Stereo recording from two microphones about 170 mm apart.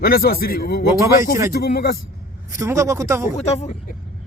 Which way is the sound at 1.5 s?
65° left (ahead or behind).